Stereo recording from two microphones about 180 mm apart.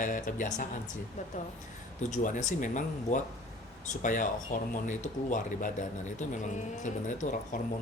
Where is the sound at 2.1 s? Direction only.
45° left (ahead or behind).